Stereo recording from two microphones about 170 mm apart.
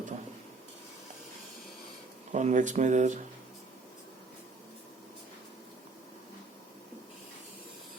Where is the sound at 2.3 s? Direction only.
45° right (ahead or behind).